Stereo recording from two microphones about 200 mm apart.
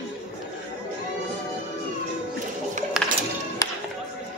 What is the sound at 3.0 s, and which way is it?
Music, 5° right (ahead or behind).